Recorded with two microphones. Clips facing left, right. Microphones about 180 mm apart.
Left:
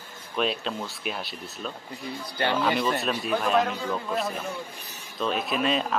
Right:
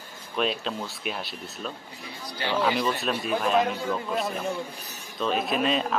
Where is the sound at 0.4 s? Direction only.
Centre (ahead or behind).